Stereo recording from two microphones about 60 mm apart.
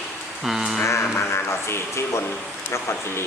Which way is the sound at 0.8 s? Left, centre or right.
Left.